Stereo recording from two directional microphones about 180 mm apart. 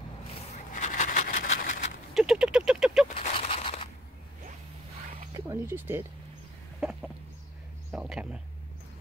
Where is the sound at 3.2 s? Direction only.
30° left (ahead or behind).